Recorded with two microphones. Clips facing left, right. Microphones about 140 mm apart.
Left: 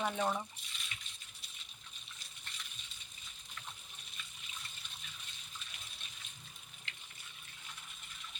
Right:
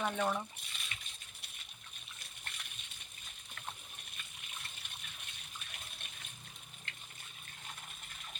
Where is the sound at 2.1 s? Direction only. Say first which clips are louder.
Right 3 dB; 60° right (ahead or behind).